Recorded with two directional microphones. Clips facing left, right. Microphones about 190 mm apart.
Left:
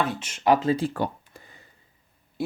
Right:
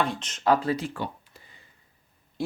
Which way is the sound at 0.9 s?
45° left (ahead or behind).